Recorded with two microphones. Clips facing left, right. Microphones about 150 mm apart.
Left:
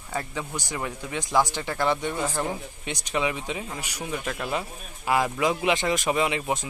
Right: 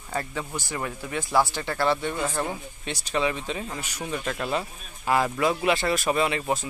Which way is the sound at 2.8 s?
15° left (ahead or behind).